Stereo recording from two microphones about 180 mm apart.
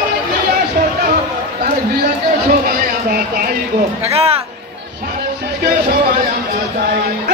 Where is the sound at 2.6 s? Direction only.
50° right (ahead or behind).